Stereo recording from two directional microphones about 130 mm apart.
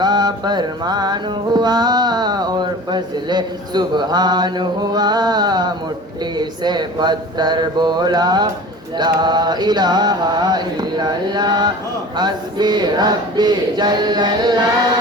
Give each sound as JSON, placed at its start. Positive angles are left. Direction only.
{"t": 0.0, "sound": "music", "side_deg": -35}